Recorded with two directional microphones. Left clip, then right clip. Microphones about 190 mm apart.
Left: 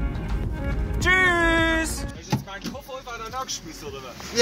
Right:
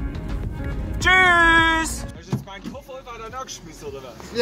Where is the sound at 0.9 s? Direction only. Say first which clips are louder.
Right 5 dB; centre (ahead or behind).